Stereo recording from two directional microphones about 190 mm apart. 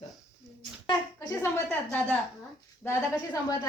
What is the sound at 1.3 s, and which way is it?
Speech, 15° left (ahead or behind).